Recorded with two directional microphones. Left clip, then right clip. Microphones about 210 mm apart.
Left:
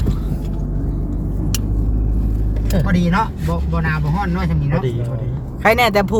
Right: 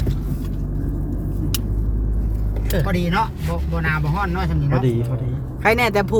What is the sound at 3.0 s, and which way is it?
Speech, 45° right (ahead or behind).